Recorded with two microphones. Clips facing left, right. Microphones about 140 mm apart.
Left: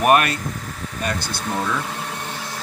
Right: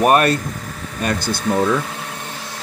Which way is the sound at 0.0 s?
35° right (ahead or behind).